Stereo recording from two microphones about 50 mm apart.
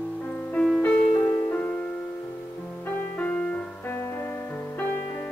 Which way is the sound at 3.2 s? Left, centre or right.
Left.